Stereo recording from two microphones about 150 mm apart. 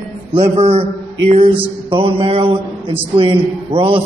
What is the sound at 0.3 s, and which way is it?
A man's voice, 40° right (ahead or behind).